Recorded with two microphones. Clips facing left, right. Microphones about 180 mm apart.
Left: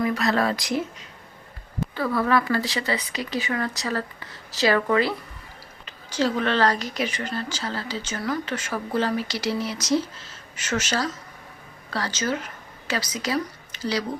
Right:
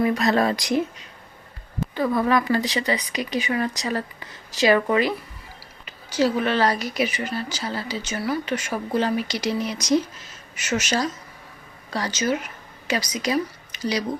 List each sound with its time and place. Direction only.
0.1 s speech: 20° right (ahead or behind)
2.0 s speech: 20° right (ahead or behind)